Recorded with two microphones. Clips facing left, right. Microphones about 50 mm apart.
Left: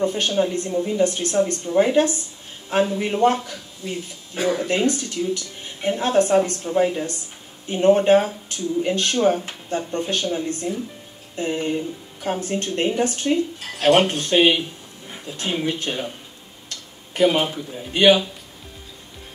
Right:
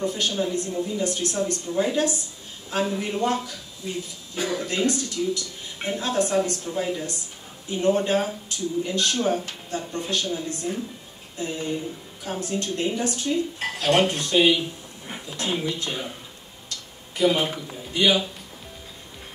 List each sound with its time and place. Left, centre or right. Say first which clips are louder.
0.0 s a woman's voice: left 5 dB; left
4.4 s speech: left 5 dB; left
4.6 s a woman's voice: left 4 dB; left
15.6 s a woman's voice: left 4 dB; left
16.6 s tick-tock: even; left
17.9 s speech: left 6 dB; left